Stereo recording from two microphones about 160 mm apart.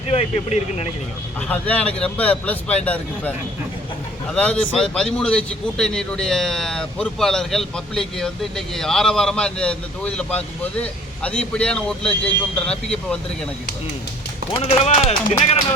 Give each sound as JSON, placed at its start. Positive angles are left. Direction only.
{"t": 0.1, "sound": "speech", "side_deg": 40}
{"t": 1.4, "sound": "a man's voice", "side_deg": 10}
{"t": 14.7, "sound": "speech", "side_deg": 40}